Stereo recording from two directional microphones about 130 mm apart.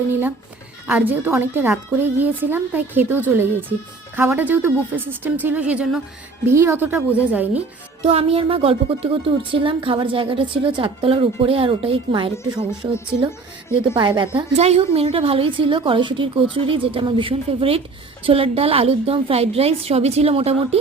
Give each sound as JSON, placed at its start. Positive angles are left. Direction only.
{"t": 0.1, "sound": "a woman's voice", "side_deg": -15}
{"t": 6.4, "sound": "a woman's voice", "side_deg": -20}
{"t": 8.0, "sound": "a woman's voice", "side_deg": -50}
{"t": 14.5, "sound": "a woman's voice", "side_deg": -55}